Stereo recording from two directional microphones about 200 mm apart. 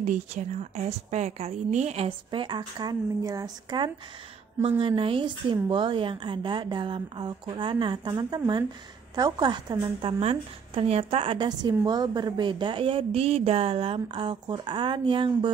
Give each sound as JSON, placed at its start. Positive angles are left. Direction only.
{"t": 0.0, "sound": "a woman's voice", "side_deg": -40}